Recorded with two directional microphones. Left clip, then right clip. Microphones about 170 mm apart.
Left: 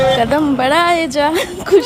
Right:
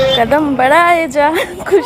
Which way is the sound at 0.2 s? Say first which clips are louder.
Right 3 dB; centre (ahead or behind).